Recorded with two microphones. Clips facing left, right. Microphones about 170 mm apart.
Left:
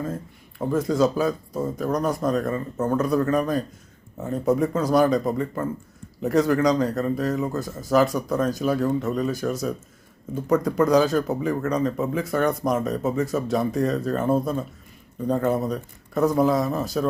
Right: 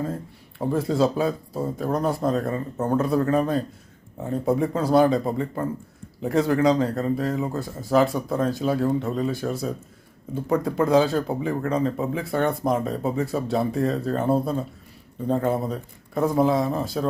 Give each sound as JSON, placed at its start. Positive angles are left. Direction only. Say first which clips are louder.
{"t": 0.7, "sound": "speech", "louder": "left 1 dB", "side_deg": -30}